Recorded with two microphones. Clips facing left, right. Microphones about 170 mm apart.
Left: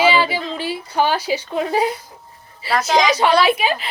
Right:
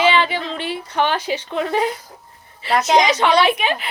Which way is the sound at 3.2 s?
5° left (ahead or behind).